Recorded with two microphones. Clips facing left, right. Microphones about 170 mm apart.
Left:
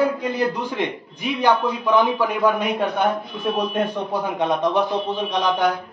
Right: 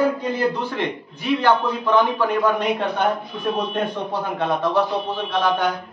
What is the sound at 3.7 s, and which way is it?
A man's voice, 15° left (ahead or behind).